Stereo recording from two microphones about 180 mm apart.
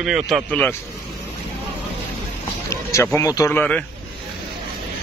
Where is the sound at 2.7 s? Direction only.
15° left (ahead or behind).